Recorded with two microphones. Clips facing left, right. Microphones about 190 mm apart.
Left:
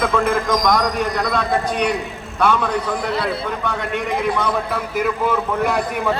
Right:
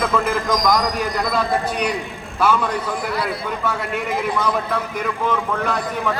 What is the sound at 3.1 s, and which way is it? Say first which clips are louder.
Speech: left 2 dB; 25° left (ahead or behind).